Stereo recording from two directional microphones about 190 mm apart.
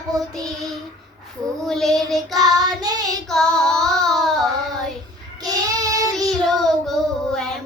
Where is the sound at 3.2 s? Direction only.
5° left (ahead or behind).